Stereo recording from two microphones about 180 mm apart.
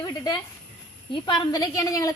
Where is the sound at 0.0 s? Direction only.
20° left (ahead or behind).